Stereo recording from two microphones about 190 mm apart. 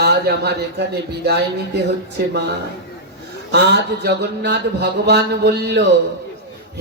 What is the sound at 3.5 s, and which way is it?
Mantra, 60° right (ahead or behind).